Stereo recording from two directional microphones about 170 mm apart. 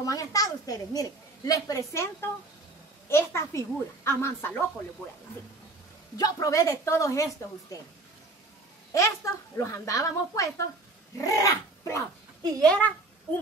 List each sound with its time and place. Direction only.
0.0 s a woman's voice: 20° left (ahead or behind)
6.1 s a woman's voice: 20° left (ahead or behind)
8.9 s a woman's voice: 20° left (ahead or behind)
12.6 s a woman's voice: 10° left (ahead or behind)